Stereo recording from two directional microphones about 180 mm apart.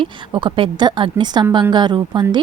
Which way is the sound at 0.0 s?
25° right (ahead or behind).